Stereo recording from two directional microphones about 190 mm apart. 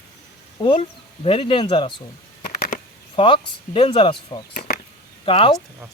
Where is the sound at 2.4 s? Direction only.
45° left (ahead or behind).